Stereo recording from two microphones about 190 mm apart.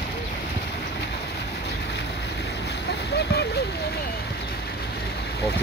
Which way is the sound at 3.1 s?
60° left (ahead or behind).